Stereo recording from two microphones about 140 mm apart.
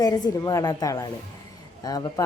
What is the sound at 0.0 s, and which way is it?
Speech, 25° left (ahead or behind).